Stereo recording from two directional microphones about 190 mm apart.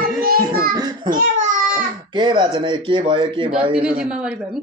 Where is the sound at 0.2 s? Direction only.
50° right (ahead or behind).